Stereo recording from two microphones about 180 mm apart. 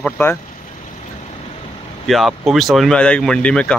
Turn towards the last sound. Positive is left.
turn(degrees=5)  # may be behind; listen again after turning